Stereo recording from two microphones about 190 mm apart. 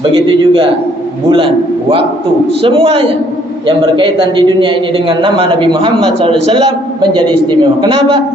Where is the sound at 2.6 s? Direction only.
30° right (ahead or behind).